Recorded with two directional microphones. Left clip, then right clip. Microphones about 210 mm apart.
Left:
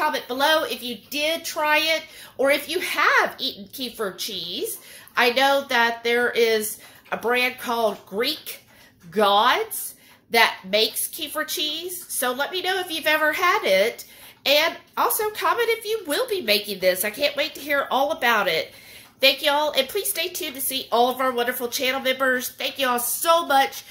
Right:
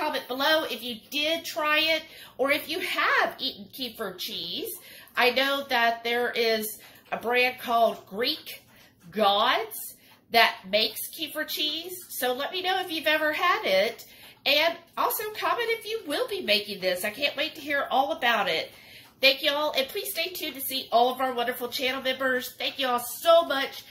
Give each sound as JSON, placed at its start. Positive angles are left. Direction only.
{"t": 0.0, "sound": "a woman's voice", "side_deg": 60}